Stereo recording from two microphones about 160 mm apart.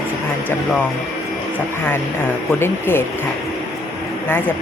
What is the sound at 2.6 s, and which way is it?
Speech, 15° left (ahead or behind).